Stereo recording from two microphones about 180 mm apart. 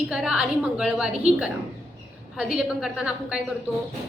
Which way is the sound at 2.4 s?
5° right (ahead or behind).